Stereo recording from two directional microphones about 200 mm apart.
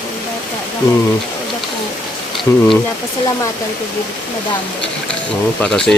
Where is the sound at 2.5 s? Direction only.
15° left (ahead or behind).